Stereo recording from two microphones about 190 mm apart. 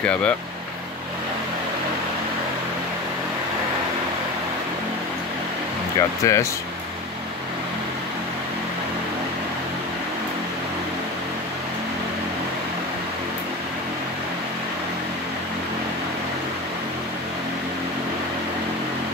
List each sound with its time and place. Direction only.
5.9 s speech: 15° left (ahead or behind)